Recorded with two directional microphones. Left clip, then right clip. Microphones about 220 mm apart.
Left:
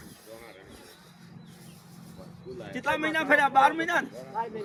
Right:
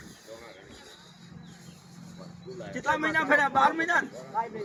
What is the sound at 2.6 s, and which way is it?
Speech, 45° left (ahead or behind).